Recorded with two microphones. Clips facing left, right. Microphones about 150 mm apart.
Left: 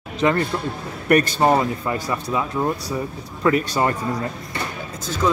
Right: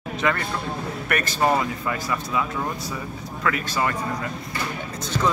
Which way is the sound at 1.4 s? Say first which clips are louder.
Left 4 dB; 25° left (ahead or behind).